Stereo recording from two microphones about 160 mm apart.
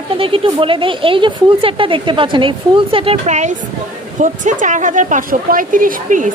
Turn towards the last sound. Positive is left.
turn(degrees=-55)  # may be behind; listen again after turning